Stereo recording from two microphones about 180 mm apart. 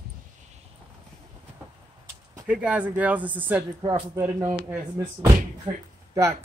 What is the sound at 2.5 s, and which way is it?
Speech, 5° right (ahead or behind).